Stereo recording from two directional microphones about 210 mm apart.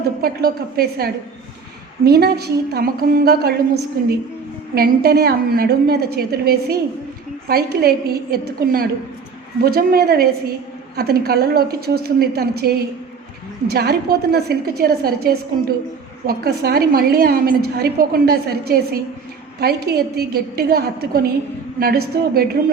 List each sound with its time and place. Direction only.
0.2 s a woman's voice: 45° right (ahead or behind)
4.7 s a woman's voice: 45° right (ahead or behind)